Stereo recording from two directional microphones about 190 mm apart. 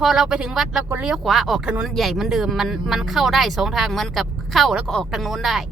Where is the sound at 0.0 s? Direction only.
Centre (ahead or behind).